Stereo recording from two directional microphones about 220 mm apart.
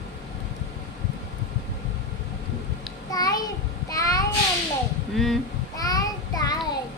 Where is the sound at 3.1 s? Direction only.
15° left (ahead or behind).